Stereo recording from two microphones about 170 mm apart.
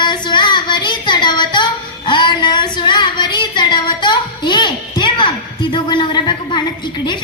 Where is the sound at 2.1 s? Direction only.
25° left (ahead or behind).